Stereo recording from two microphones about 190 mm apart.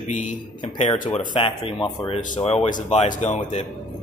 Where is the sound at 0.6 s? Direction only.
25° left (ahead or behind).